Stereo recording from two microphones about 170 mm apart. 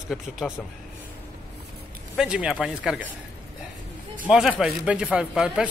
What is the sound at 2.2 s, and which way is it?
Speech, 5° right (ahead or behind).